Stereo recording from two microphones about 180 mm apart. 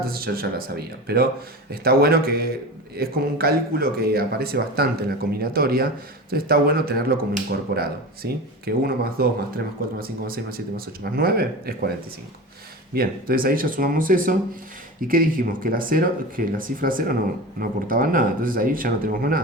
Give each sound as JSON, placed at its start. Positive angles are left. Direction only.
{"t": 0.0, "sound": "speech", "side_deg": -55}
{"t": 12.9, "sound": "speech", "side_deg": -55}